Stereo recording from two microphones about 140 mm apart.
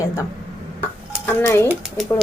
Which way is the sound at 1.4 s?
15° left (ahead or behind).